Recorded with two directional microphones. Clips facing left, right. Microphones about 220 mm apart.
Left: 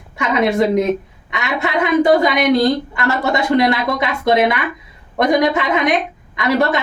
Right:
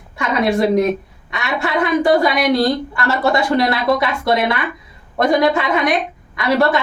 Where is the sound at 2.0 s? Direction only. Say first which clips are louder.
Left 2 dB; 20° left (ahead or behind).